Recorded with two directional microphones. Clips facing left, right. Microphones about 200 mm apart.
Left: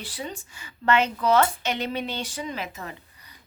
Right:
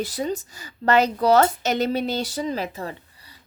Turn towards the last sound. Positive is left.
turn(degrees=-35)  # may be behind; listen again after turning